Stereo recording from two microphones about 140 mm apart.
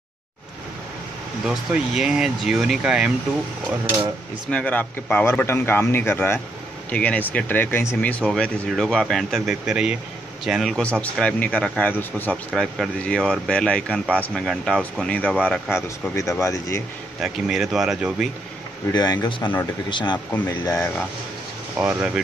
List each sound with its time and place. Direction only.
1.4 s speech: 5° right (ahead or behind)
4.5 s speech: 10° left (ahead or behind)
15.7 s speech: 20° left (ahead or behind)
17.2 s speech: 5° right (ahead or behind)
18.9 s speech: 30° left (ahead or behind)
20.3 s speech: 20° left (ahead or behind)
21.7 s speech: 5° right (ahead or behind)